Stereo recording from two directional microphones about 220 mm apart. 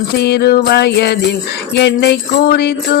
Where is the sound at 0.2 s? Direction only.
50° left (ahead or behind).